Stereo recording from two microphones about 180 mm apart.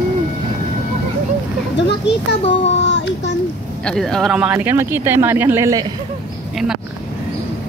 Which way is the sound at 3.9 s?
5° left (ahead or behind).